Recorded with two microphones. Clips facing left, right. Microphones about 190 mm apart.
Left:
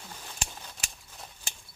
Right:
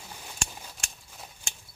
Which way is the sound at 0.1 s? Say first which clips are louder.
Right 2 dB; 5° right (ahead or behind).